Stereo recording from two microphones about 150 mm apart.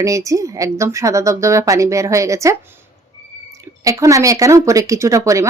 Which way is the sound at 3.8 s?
20° right (ahead or behind).